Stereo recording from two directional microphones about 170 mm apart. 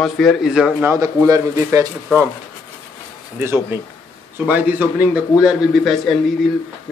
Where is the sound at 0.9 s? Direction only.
20° right (ahead or behind).